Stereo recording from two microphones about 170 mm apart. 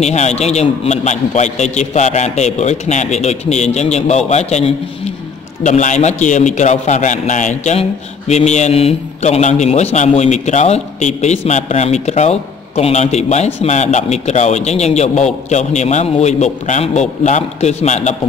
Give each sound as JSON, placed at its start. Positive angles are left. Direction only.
{"t": 0.0, "sound": "a man's voice", "side_deg": 40}